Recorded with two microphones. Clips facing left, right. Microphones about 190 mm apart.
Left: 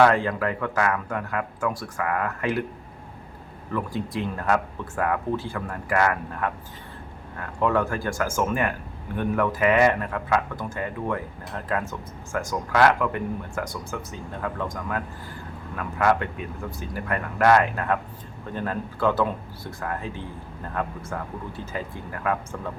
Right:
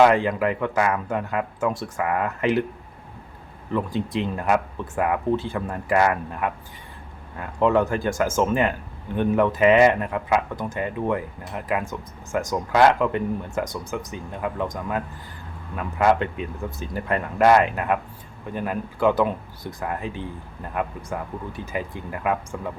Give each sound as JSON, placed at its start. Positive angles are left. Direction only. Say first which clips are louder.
{"t": 0.0, "sound": "speech", "louder": "right 2 dB", "side_deg": -15}
{"t": 3.7, "sound": "speech", "louder": "right 3 dB", "side_deg": -20}